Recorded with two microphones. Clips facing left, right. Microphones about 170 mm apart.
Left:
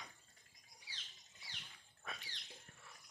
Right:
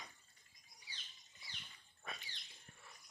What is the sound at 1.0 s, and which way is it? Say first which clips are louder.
Bird: left 1 dB; 80° left.